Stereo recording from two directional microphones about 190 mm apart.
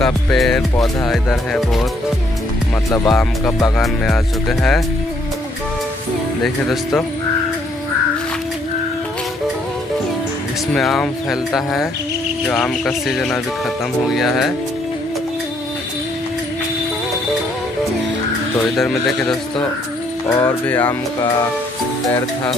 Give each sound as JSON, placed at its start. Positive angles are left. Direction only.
{"t": 0.0, "sound": "speech", "side_deg": 0}
{"t": 3.1, "sound": "speech", "side_deg": 5}
{"t": 10.7, "sound": "speech", "side_deg": 5}
{"t": 18.8, "sound": "speech", "side_deg": 0}
{"t": 20.2, "sound": "speech", "side_deg": 15}